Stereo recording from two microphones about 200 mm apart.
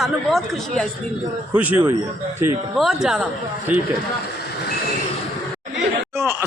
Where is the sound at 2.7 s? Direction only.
Centre (ahead or behind).